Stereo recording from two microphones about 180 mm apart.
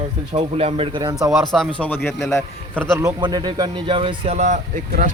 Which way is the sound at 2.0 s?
15° left (ahead or behind).